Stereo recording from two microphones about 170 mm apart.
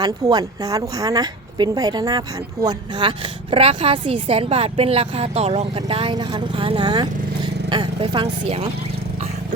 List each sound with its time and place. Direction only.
0.0 s a woman's voice: 25° right (ahead or behind)